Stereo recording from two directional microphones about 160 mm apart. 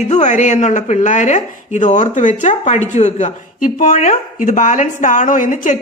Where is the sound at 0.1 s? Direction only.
45° left (ahead or behind).